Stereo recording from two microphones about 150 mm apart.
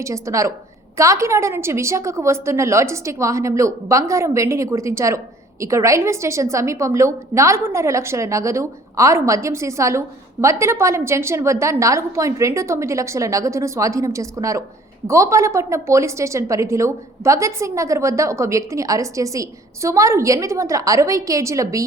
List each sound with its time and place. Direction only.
0.0 s a woman's voice: 20° right (ahead or behind)